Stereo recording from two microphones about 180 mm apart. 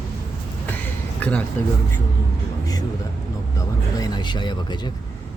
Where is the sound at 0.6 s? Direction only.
10° left (ahead or behind).